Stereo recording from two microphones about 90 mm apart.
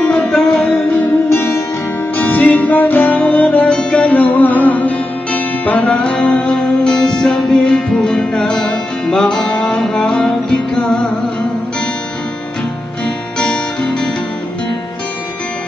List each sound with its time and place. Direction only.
0.0 s music: 10° left (ahead or behind)
1.3 s music: 30° left (ahead or behind); by 11.0 s 5° left (ahead or behind)
13.4 s guitar: 10° left (ahead or behind)